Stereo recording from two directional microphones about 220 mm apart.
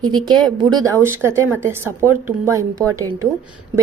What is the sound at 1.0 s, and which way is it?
A woman's voice, 10° right (ahead or behind).